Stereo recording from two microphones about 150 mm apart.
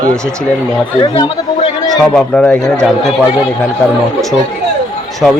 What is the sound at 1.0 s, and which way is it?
Speech, 30° left (ahead or behind).